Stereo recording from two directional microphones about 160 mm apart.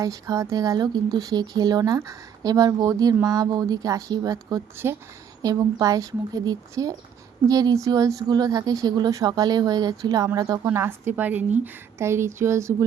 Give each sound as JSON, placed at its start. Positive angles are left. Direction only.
{"t": 0.0, "sound": "a woman's voice", "side_deg": -20}